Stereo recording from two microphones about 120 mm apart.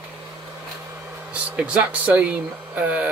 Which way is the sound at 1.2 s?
10° right (ahead or behind).